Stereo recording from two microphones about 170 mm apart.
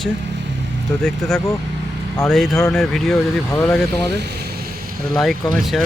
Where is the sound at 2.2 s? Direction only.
Centre (ahead or behind).